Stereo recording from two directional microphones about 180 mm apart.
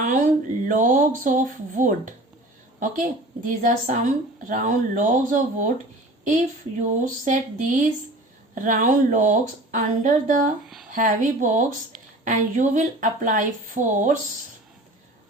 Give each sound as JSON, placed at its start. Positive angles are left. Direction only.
{"t": 0.0, "sound": "speech", "side_deg": -45}
{"t": 3.4, "sound": "speech", "side_deg": -45}